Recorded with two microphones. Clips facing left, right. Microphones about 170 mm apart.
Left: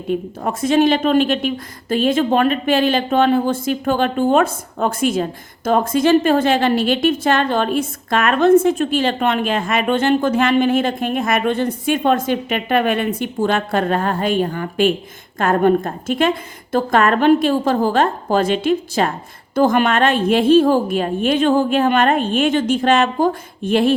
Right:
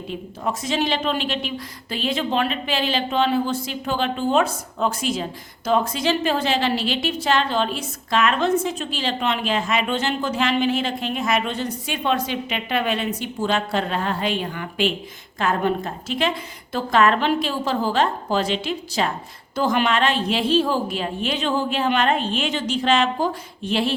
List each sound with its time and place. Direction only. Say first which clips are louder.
0.1 s speech: left 7 dB; 55° left (ahead or behind)